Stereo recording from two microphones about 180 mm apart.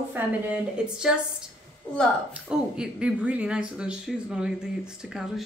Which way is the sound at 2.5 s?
5° right (ahead or behind).